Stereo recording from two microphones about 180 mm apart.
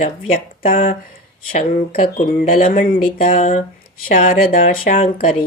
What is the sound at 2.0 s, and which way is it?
Speech, 45° left (ahead or behind).